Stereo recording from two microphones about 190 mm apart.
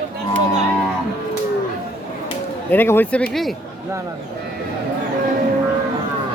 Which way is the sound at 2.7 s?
10° left (ahead or behind).